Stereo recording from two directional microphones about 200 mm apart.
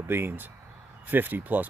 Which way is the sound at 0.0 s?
10° right (ahead or behind).